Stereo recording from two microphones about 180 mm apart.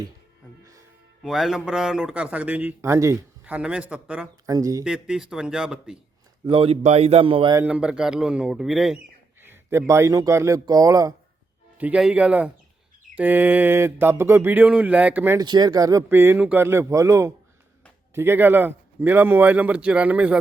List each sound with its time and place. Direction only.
1.2 s a man's voice: centre (ahead or behind)
4.4 s speech: 20° right (ahead or behind)
4.8 s a man's voice: 5° right (ahead or behind)
6.4 s speech: 30° right (ahead or behind)
7.5 s a man's voice: 10° right (ahead or behind)
9.4 s speech: 10° right (ahead or behind)
11.8 s speech: 5° right (ahead or behind)